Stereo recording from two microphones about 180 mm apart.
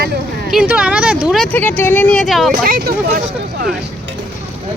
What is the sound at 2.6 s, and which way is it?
Speech, 55° right (ahead or behind).